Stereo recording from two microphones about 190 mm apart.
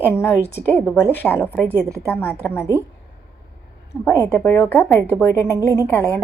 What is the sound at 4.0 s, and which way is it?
A woman's voice, 10° left (ahead or behind).